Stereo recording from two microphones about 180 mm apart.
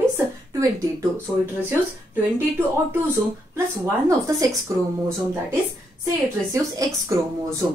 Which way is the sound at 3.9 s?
20° right (ahead or behind).